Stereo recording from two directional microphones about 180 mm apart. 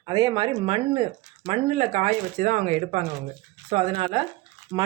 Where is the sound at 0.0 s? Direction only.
25° right (ahead or behind).